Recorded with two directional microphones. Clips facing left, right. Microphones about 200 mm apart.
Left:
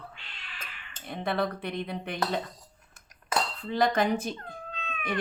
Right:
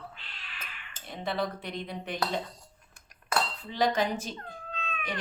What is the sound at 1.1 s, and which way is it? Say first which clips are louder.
Speech: left 3 dB; 55° left (ahead or behind).